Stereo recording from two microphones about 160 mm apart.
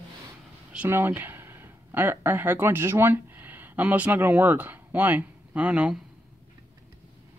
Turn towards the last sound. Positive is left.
turn(degrees=-5)  # may be behind; listen again after turning